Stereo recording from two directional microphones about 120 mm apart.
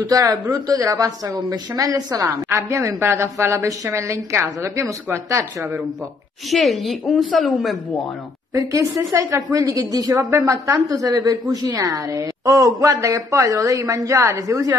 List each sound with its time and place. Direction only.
0.0 s a woman's voice: 30° right (ahead or behind)
6.5 s a woman's voice: centre (ahead or behind)
8.5 s a woman's voice: 25° right (ahead or behind)